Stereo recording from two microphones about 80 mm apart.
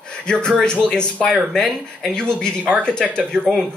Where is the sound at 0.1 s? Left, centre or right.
Centre.